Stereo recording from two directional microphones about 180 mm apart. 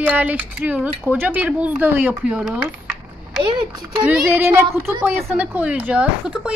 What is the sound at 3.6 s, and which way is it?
Speech, 25° right (ahead or behind).